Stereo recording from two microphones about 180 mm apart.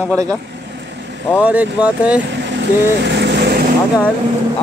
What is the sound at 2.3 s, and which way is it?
Vehicle, 70° right (ahead or behind).